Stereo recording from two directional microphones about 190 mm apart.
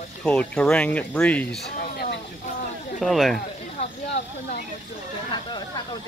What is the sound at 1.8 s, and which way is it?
Speech, 55° left (ahead or behind).